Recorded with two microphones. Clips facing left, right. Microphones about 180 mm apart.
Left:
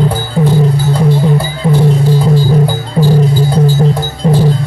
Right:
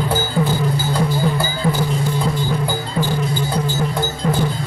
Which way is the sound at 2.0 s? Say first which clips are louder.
Left 9 dB; 35° left (ahead or behind).